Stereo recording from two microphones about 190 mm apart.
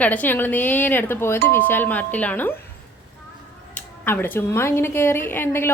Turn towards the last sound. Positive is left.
turn(degrees=10)  # may be behind; listen again after turning